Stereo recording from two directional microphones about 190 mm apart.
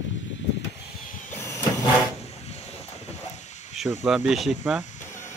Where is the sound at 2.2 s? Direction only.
35° left (ahead or behind).